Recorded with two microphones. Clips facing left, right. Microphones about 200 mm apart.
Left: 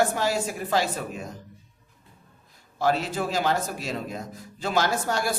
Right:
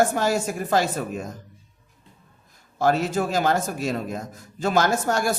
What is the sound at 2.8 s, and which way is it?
A man's voice, 45° right (ahead or behind).